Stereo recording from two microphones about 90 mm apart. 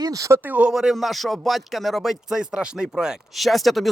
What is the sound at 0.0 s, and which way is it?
Speech, 40° right (ahead or behind).